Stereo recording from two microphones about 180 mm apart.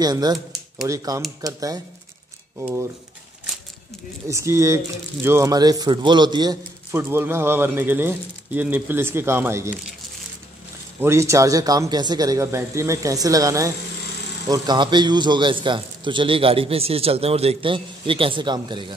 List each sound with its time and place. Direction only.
0.0 s a man's voice: 20° right (ahead or behind)
4.3 s a man's voice: 15° right (ahead or behind)
11.0 s a man's voice: 15° right (ahead or behind)